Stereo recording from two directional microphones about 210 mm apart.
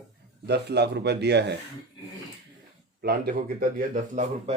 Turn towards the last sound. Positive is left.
turn(degrees=-35)  # may be behind; listen again after turning